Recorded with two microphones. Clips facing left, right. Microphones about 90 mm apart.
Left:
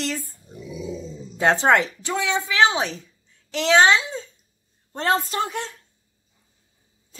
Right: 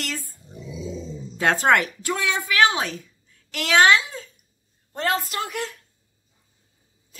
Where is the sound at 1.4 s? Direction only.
20° left (ahead or behind).